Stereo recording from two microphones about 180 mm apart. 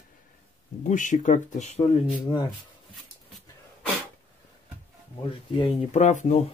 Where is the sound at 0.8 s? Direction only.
45° left (ahead or behind).